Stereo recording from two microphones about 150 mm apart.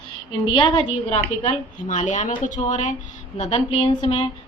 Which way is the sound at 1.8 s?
55° left (ahead or behind).